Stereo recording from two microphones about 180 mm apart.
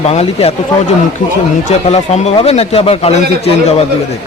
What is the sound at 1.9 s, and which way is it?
A man's voice, 35° left (ahead or behind).